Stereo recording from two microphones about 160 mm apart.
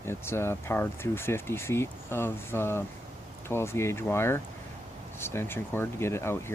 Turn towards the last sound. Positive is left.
turn(degrees=15)  # may be behind; listen again after turning